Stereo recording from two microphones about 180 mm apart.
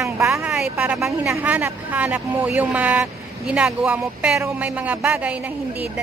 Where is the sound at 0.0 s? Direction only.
15° right (ahead or behind).